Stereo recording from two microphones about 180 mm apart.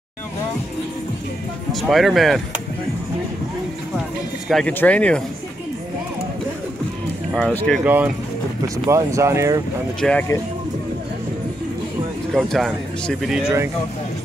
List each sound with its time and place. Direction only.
1.7 s speech: centre (ahead or behind)
4.5 s speech: 5° left (ahead or behind)
7.3 s speech: 5° left (ahead or behind)
7.8 s speech: 10° right (ahead or behind)
9.9 s speech: 5° left (ahead or behind)
12.4 s speech: centre (ahead or behind)